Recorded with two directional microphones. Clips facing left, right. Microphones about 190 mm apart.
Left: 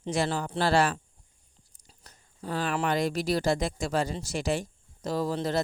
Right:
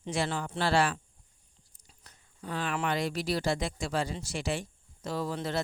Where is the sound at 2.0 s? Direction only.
40° left (ahead or behind).